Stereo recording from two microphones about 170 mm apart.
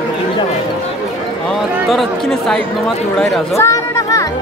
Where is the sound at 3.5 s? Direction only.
20° left (ahead or behind).